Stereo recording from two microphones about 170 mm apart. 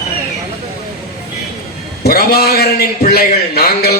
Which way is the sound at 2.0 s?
65° left (ahead or behind).